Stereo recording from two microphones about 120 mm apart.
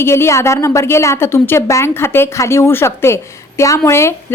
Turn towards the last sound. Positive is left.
turn(degrees=20)  # may be behind; listen again after turning